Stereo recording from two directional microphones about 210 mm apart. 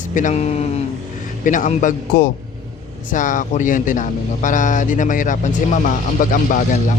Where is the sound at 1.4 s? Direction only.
40° left (ahead or behind).